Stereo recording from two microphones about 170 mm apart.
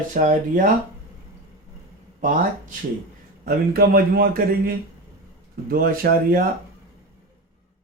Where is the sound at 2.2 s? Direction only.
50° right (ahead or behind).